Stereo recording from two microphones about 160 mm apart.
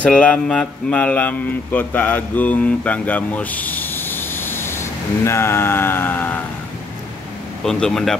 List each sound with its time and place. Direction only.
0.0 s speech: 5° left (ahead or behind)
7.6 s speech: 5° left (ahead or behind)